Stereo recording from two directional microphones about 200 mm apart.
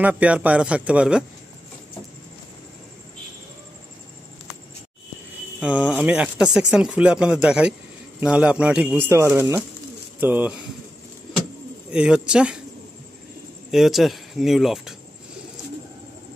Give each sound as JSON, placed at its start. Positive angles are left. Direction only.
{"t": 0.0, "sound": "speech", "side_deg": -5}
{"t": 5.6, "sound": "speech", "side_deg": -5}
{"t": 11.9, "sound": "speech", "side_deg": -5}
{"t": 13.7, "sound": "speech", "side_deg": 0}